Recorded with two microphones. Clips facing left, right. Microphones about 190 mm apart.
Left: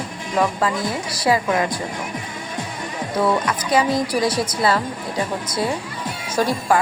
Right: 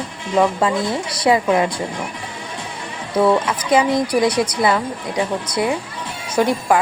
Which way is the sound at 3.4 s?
20° right (ahead or behind).